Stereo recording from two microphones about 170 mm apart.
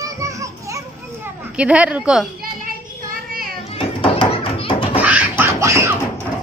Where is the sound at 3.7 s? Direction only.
30° left (ahead or behind).